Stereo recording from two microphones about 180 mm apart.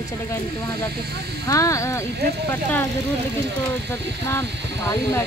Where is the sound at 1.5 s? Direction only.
15° left (ahead or behind).